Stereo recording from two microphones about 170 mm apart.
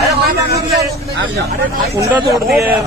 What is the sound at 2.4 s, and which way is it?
Speech, centre (ahead or behind).